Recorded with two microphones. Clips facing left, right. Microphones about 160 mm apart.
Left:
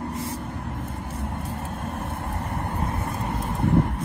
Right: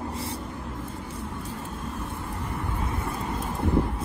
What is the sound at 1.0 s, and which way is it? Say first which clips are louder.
Vehicle: left 3 dB; 70° left (ahead or behind).